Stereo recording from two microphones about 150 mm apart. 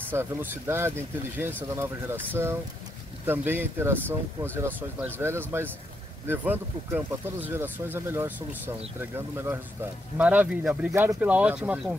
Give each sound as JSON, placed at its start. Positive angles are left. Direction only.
{"t": 0.1, "sound": "speech", "side_deg": -15}
{"t": 10.9, "sound": "speech", "side_deg": -20}
{"t": 11.1, "sound": "speech", "side_deg": -10}